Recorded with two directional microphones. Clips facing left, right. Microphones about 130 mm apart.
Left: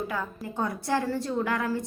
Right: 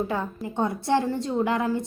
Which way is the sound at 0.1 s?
25° right (ahead or behind).